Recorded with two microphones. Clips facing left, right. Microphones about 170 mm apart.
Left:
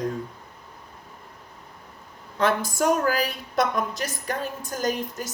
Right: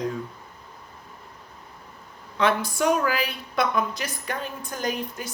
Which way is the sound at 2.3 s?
45° left (ahead or behind).